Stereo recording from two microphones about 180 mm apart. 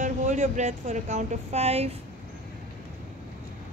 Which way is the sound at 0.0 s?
45° right (ahead or behind).